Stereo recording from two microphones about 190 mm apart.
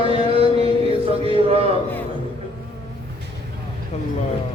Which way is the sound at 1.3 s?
30° right (ahead or behind).